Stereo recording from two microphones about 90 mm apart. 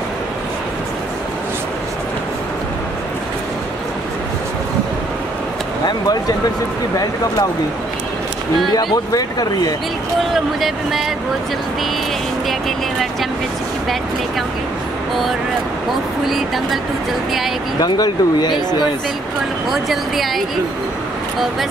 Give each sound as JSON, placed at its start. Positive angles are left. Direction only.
{"t": 5.9, "sound": "a sound", "side_deg": 45}
{"t": 8.9, "sound": "speech", "side_deg": 45}
{"t": 10.3, "sound": "speech", "side_deg": 0}
{"t": 16.3, "sound": "speech", "side_deg": 0}
{"t": 17.7, "sound": "speech", "side_deg": 50}
{"t": 19.7, "sound": "speech", "side_deg": 0}